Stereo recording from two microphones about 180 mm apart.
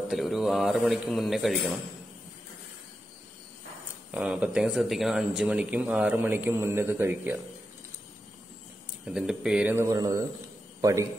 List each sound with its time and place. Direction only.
0.1 s speech: centre (ahead or behind)
4.1 s speech: 5° right (ahead or behind)
9.0 s a man's voice: 5° right (ahead or behind)